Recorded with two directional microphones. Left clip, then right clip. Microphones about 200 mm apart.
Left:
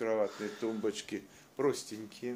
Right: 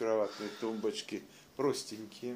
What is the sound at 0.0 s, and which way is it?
Speech, 15° left (ahead or behind).